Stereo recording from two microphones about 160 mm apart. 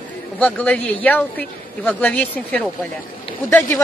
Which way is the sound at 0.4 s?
10° left (ahead or behind).